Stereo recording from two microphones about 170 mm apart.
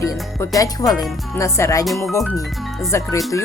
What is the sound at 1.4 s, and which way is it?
Music, 15° left (ahead or behind).